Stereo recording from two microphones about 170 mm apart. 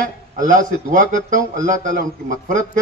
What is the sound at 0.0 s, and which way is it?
A man's voice, 50° right (ahead or behind).